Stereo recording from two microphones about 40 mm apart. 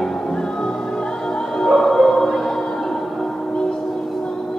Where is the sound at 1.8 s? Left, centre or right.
Centre.